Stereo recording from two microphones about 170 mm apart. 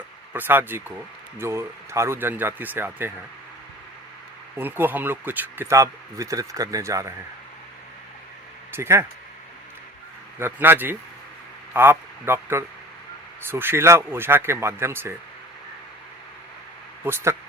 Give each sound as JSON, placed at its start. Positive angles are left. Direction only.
{"t": 0.3, "sound": "speech", "side_deg": -10}
{"t": 4.5, "sound": "speech", "side_deg": -10}
{"t": 8.7, "sound": "speech", "side_deg": -15}
{"t": 10.3, "sound": "speech", "side_deg": -15}
{"t": 17.0, "sound": "speech", "side_deg": -15}